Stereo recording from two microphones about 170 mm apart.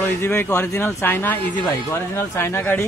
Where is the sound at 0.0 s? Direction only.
15° left (ahead or behind).